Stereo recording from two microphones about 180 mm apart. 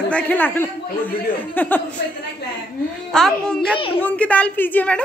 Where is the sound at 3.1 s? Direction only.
5° left (ahead or behind).